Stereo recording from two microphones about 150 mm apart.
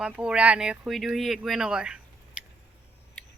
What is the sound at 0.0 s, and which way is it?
Speech, 5° right (ahead or behind).